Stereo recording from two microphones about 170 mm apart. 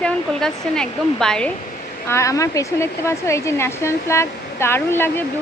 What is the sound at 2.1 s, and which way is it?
Speech, 15° left (ahead or behind).